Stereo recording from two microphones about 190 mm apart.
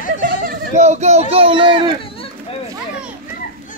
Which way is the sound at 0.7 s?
35° right (ahead or behind).